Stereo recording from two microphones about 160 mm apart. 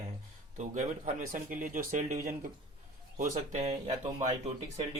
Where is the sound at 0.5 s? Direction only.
50° right (ahead or behind).